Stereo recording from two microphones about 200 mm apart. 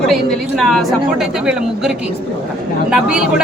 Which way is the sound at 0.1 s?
Centre (ahead or behind).